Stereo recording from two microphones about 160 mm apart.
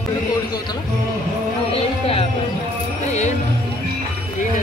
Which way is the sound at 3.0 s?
45° left (ahead or behind).